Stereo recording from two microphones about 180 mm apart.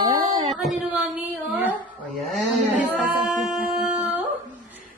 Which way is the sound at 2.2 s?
5° right (ahead or behind).